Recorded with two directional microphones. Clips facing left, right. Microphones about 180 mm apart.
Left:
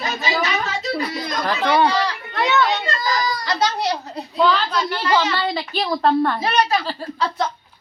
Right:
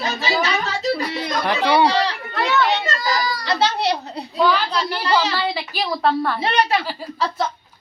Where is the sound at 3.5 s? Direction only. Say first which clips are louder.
Right 3 dB; 30° right (ahead or behind).